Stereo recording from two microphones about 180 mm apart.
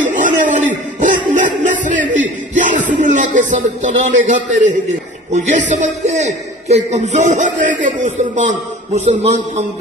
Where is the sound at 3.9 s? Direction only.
45° right (ahead or behind).